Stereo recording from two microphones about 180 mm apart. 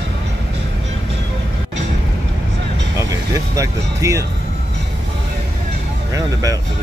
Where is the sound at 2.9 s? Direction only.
15° right (ahead or behind).